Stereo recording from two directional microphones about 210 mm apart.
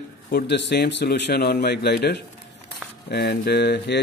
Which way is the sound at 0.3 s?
55° left (ahead or behind).